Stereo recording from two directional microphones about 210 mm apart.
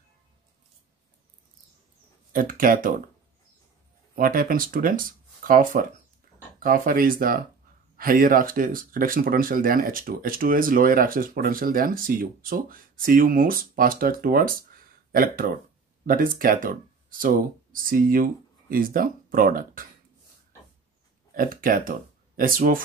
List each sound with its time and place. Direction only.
2.3 s speech: 40° right (ahead or behind)
4.1 s speech: 45° right (ahead or behind)
21.3 s speech: 40° right (ahead or behind)